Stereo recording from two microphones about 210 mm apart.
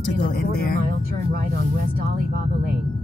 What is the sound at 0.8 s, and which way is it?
Speech, 40° right (ahead or behind).